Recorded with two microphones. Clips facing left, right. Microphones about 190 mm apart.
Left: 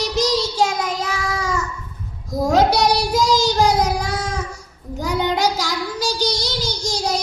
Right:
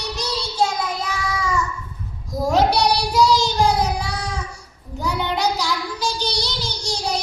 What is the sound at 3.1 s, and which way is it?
Child singing, 45° left (ahead or behind).